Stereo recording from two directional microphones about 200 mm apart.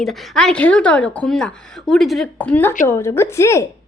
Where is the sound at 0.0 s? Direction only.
Centre (ahead or behind).